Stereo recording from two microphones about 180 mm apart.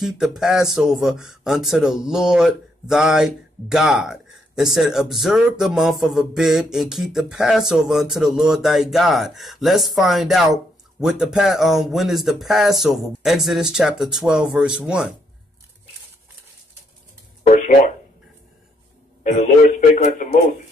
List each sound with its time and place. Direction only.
0.0 s speech: centre (ahead or behind)
19.2 s a man's voice: 40° left (ahead or behind)